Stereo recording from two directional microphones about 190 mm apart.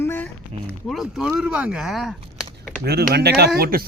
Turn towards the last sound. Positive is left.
turn(degrees=-50)  # may be behind; listen again after turning